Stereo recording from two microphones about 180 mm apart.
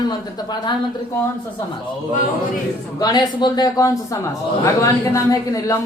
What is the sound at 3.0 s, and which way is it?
A woman's voice, 20° left (ahead or behind).